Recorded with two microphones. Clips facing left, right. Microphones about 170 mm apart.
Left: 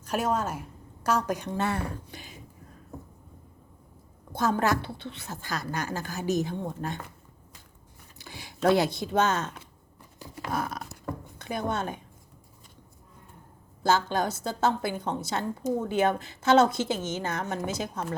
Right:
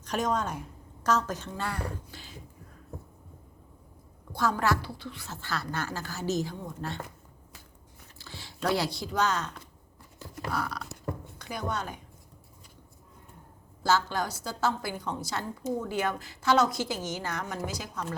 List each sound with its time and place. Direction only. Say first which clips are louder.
0.0 s a woman's voice: left 2 dB; 10° left (ahead or behind)
4.3 s a woman's voice: left 2 dB; 20° left (ahead or behind)
8.2 s speech: left 6 dB; 15° left (ahead or behind)
10.5 s a woman's voice: left 3 dB; 20° left (ahead or behind)
13.8 s a woman's voice: left 2 dB; 20° left (ahead or behind)